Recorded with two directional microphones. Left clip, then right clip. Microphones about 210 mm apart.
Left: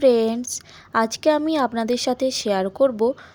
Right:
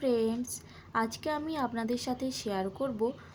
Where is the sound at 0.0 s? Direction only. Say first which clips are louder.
Left 13 dB; 45° left (ahead or behind).